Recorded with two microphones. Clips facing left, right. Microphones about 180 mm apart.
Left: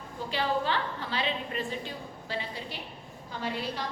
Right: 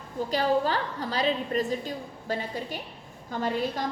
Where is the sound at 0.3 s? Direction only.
40° right (ahead or behind).